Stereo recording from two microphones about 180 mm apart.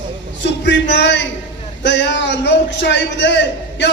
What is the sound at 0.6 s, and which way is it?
A man's voice, 75° left (ahead or behind).